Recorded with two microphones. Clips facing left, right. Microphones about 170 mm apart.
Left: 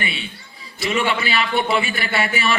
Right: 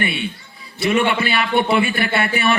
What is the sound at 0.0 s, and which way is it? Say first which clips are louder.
A man's voice: right 6 dB; 55° right (ahead or behind).